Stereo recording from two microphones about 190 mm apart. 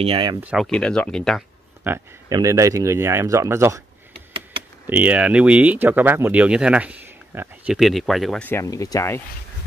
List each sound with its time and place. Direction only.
0.0 s speech: 25° right (ahead or behind)
0.4 s speech: 5° right (ahead or behind)
1.9 s speech: 15° right (ahead or behind)
4.8 s speech: 10° right (ahead or behind); by 9.2 s 15° left (ahead or behind)